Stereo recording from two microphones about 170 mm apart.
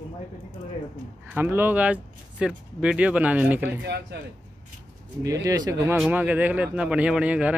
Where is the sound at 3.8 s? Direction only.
80° right.